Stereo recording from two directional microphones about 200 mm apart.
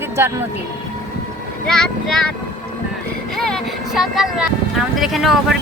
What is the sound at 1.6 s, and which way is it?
Speech, 5° left (ahead or behind).